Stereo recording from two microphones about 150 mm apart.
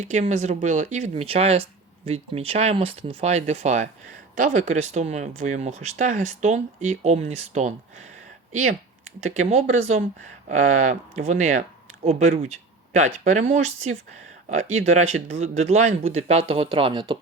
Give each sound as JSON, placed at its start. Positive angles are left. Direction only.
{"t": 0.0, "sound": "speech", "side_deg": -50}
{"t": 4.4, "sound": "speech", "side_deg": -60}
{"t": 4.7, "sound": "speech", "side_deg": -45}
{"t": 9.2, "sound": "speech", "side_deg": -50}